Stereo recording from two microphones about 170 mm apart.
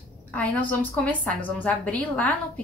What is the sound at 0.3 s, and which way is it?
A woman's voice, 10° left (ahead or behind).